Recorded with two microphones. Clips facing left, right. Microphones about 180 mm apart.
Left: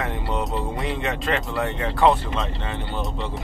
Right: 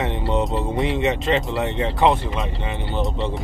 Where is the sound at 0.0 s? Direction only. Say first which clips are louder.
Right 4 dB; 25° right (ahead or behind).